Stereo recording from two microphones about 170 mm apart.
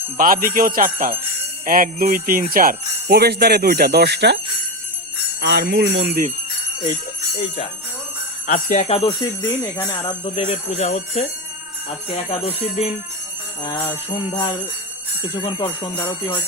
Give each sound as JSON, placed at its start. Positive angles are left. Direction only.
{"t": 0.2, "sound": "jingle bell", "side_deg": -55}
{"t": 5.4, "sound": "speech", "side_deg": -90}
{"t": 8.4, "sound": "speech", "side_deg": 50}
{"t": 8.9, "sound": "speech", "side_deg": 30}
{"t": 11.9, "sound": "jingle bell", "side_deg": 35}
{"t": 15.4, "sound": "jingle bell", "side_deg": 30}
{"t": 16.0, "sound": "jingle bell", "side_deg": 10}